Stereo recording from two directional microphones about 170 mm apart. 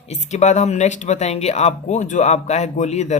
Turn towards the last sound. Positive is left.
turn(degrees=40)  # may be behind; listen again after turning